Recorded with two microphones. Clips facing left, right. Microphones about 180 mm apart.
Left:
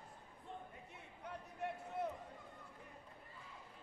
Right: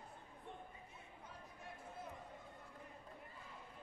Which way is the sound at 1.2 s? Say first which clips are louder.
Left 12 dB; 70° left (ahead or behind).